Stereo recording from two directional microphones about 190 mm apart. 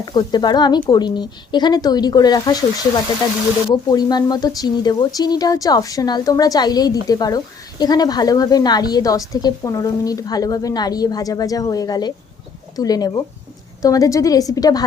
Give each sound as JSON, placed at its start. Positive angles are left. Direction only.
{"t": 0.0, "sound": "speech", "side_deg": 20}
{"t": 3.8, "sound": "speech", "side_deg": 20}